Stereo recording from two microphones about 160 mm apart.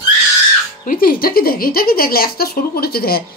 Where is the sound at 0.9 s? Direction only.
65° left (ahead or behind).